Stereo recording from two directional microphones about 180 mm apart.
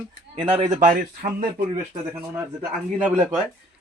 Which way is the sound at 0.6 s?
45° right (ahead or behind).